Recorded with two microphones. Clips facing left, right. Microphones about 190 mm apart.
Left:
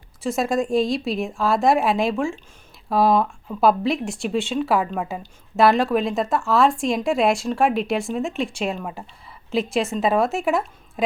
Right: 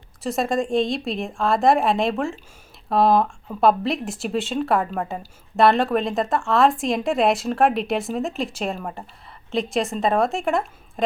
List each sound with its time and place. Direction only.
0.2 s speech: centre (ahead or behind)